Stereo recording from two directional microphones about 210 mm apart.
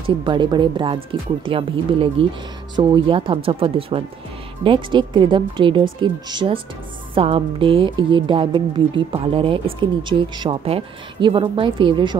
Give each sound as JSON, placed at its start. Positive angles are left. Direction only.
{"t": 0.2, "sound": "speech", "side_deg": -20}